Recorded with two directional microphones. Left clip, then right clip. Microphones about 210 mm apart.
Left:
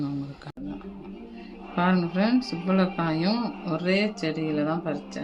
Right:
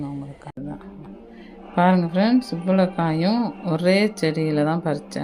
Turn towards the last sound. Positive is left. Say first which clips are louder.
# right 5 dB
turn(degrees=-35)  # may be behind; listen again after turning